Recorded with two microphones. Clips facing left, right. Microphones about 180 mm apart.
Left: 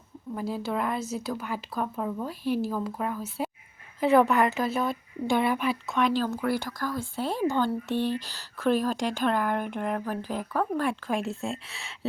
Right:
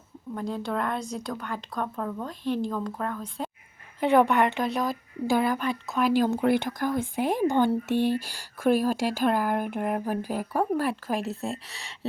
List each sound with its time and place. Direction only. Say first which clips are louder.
0.3 s speech: even; 5° left (ahead or behind)
6.2 s speech: right 5 dB; 20° right (ahead or behind); by 11.9 s centre (ahead or behind)